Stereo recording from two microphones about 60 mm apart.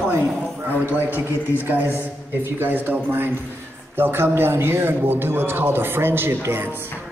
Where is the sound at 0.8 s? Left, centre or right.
Right.